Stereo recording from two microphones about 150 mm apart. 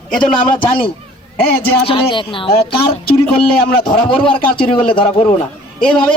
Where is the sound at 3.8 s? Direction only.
35° left (ahead or behind).